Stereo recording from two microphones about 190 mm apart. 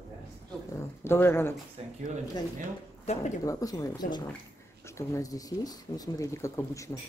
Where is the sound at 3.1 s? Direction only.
35° left (ahead or behind).